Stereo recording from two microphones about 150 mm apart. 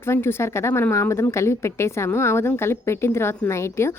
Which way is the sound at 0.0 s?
15° left (ahead or behind).